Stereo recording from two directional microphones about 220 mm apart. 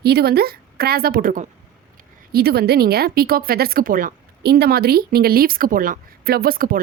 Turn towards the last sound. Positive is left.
turn(degrees=-40)  # may be behind; listen again after turning